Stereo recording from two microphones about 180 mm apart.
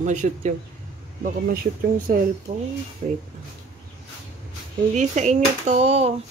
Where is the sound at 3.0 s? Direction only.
45° right (ahead or behind).